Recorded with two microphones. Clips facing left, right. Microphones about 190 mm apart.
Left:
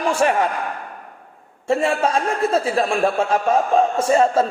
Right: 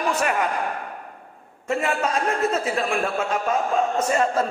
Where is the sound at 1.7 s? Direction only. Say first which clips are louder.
Left 5 dB; 30° left (ahead or behind).